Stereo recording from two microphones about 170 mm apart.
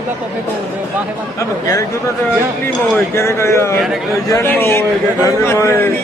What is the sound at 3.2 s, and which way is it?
A man's voice, 15° left (ahead or behind).